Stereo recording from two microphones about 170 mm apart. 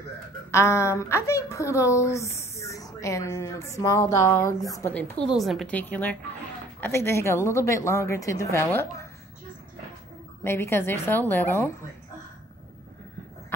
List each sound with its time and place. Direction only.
0.5 s a woman's voice: 15° left (ahead or behind)
5.3 s a woman's voice: centre (ahead or behind); by 8.8 s 15° left (ahead or behind)
10.4 s a woman's voice: 15° left (ahead or behind)